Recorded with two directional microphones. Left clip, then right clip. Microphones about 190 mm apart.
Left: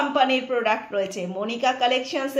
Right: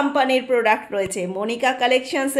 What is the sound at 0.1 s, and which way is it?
Speech, 55° right (ahead or behind).